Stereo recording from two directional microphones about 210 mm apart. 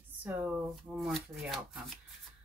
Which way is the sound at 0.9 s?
Centre (ahead or behind).